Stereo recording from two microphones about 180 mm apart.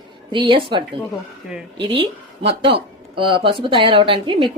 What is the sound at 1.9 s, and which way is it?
Speech, 30° right (ahead or behind).